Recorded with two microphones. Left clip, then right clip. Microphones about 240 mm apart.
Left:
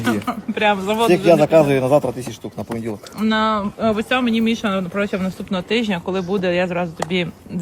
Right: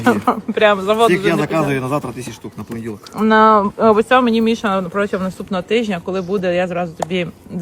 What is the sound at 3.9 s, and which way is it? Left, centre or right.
Speech, centre.